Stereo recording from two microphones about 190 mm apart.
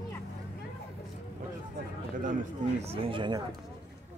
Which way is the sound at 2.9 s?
30° right (ahead or behind).